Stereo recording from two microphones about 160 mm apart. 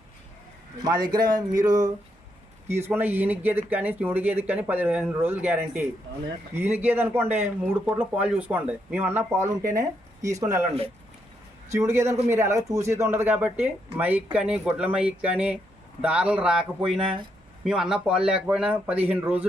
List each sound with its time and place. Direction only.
0.9 s speech: 25° right (ahead or behind)
11.7 s speech: 15° right (ahead or behind)